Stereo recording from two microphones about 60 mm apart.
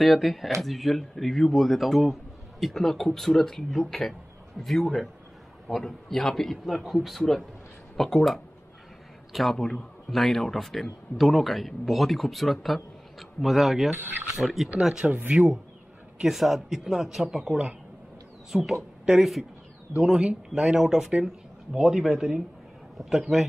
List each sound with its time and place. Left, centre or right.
0.0 s a man's voice: centre
16.2 s a man's voice: centre